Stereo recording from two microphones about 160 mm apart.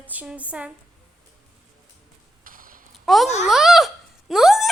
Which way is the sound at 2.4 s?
60° right (ahead or behind).